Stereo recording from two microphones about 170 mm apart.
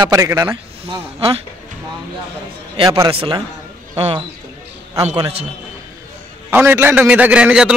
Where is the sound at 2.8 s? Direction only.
20° right (ahead or behind).